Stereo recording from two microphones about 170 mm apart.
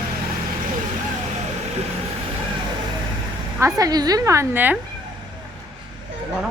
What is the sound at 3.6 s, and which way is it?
A woman's voice, 20° right (ahead or behind).